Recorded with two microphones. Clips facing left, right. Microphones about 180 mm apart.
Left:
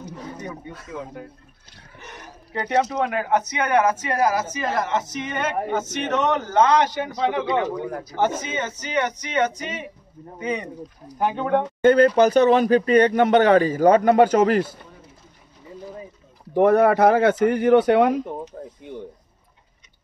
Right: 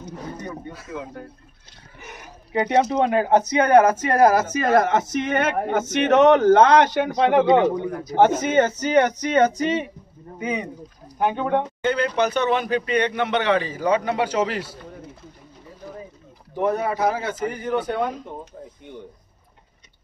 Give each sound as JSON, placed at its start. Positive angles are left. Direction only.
{"t": 2.5, "sound": "speech", "side_deg": -20}
{"t": 7.4, "sound": "a man's voice", "side_deg": -20}
{"t": 8.2, "sound": "speech", "side_deg": -60}
{"t": 10.4, "sound": "speech", "side_deg": -5}
{"t": 11.8, "sound": "speech", "side_deg": 45}
{"t": 16.5, "sound": "speech", "side_deg": 60}